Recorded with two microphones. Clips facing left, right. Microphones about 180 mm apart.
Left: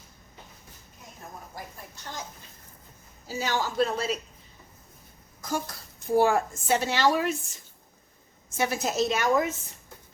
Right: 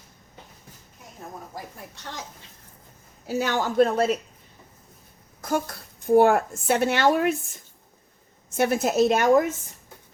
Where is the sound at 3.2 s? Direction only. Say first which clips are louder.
Right 4 dB; 60° right (ahead or behind).